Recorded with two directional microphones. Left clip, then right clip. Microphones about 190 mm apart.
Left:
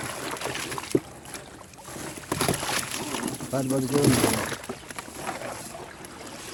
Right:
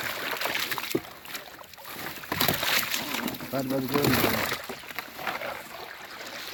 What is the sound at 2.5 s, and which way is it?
Boat, 10° right (ahead or behind).